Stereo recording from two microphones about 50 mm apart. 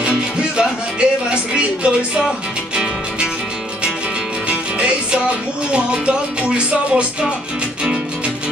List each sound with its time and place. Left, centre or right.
0.0 s music: right
4.5 s music: right